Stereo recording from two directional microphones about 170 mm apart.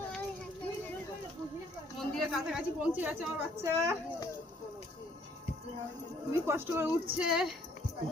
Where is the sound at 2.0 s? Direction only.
Centre (ahead or behind); by 3.9 s 15° right (ahead or behind).